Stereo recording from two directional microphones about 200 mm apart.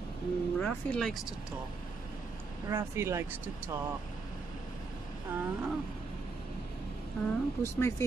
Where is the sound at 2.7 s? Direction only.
15° right (ahead or behind).